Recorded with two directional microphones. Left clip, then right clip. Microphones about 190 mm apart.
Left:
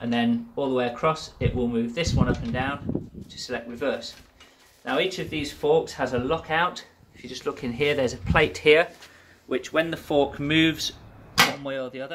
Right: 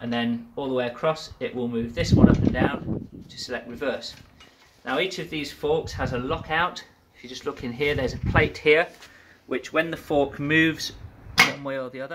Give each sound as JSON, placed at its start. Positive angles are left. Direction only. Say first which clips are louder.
{"t": 0.0, "sound": "speech", "louder": "left 2 dB", "side_deg": 0}
{"t": 9.7, "sound": "speech", "louder": "even", "side_deg": -20}